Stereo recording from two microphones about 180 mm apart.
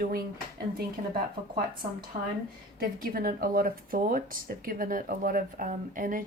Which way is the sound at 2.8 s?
55° right (ahead or behind).